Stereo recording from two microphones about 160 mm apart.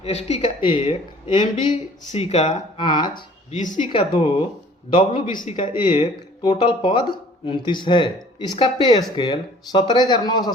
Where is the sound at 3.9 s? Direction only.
30° left (ahead or behind).